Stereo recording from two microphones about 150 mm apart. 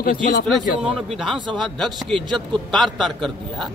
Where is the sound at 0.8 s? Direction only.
5° right (ahead or behind).